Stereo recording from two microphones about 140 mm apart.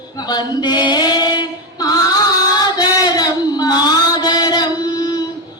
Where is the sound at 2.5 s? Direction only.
30° left (ahead or behind).